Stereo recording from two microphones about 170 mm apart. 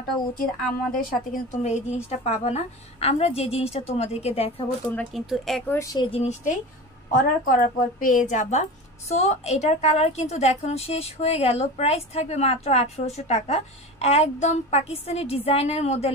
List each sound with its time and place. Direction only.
1.3 s a woman's voice: 45° left (ahead or behind)
4.9 s speech: centre (ahead or behind)
5.7 s a woman's voice: 20° left (ahead or behind); by 6.6 s 45° left (ahead or behind)
7.1 s a woman's voice: 55° left (ahead or behind)